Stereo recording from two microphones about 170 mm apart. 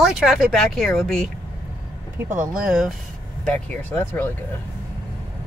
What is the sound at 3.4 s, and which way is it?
Speech, 10° left (ahead or behind).